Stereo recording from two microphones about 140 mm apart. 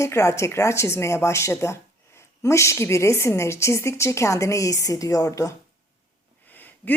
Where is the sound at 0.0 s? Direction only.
20° left (ahead or behind).